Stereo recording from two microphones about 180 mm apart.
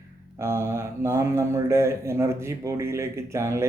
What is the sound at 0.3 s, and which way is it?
Speech, 15° right (ahead or behind).